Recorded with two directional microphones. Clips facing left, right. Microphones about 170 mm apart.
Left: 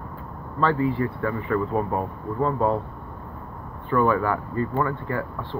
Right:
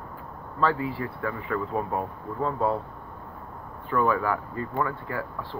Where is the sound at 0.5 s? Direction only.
5° right (ahead or behind).